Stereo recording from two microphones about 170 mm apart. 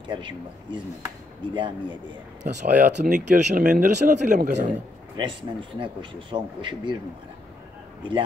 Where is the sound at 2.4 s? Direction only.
45° right (ahead or behind).